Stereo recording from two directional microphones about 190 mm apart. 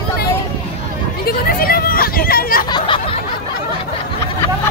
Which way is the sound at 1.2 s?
50° left (ahead or behind).